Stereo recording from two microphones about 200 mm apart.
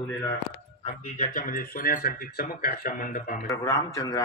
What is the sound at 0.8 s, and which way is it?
Speech, 35° left (ahead or behind).